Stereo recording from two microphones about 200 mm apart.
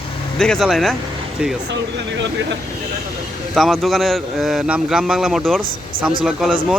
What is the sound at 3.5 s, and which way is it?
Speech, centre (ahead or behind).